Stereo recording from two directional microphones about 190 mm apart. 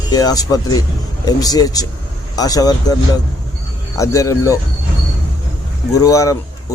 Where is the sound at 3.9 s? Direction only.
15° left (ahead or behind).